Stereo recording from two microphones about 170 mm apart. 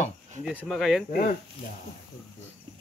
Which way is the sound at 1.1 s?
50° left (ahead or behind).